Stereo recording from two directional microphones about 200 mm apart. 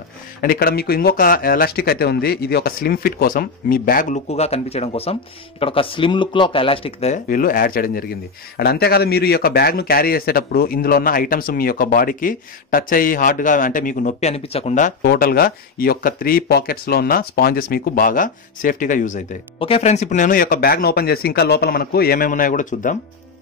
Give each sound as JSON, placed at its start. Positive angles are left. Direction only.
{"t": 0.4, "sound": "speech", "side_deg": 45}
{"t": 7.2, "sound": "speech", "side_deg": 45}
{"t": 15.0, "sound": "speech", "side_deg": 50}